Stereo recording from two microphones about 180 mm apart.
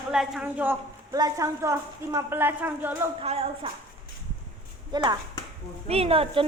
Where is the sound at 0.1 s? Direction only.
5° right (ahead or behind).